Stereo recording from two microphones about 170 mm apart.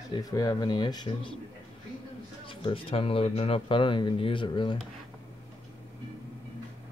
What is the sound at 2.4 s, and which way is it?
Speech, 30° left (ahead or behind).